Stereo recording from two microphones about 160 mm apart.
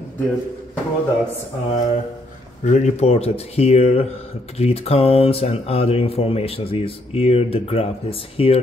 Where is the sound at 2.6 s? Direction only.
45° left (ahead or behind).